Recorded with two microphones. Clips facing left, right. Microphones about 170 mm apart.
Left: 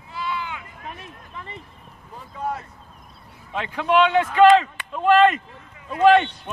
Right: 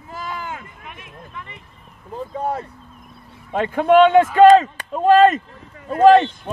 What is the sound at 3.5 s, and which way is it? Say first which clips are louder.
A man's voice: right 6 dB; 50° right (ahead or behind).